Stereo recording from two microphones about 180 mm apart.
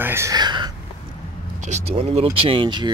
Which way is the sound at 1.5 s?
40° right (ahead or behind).